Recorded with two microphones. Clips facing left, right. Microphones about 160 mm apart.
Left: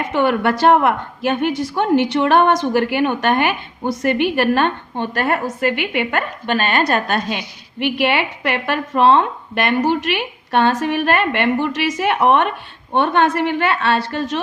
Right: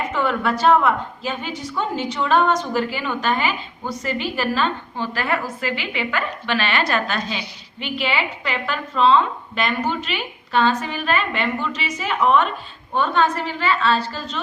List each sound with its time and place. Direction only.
0.1 s a woman's voice: 70° left (ahead or behind)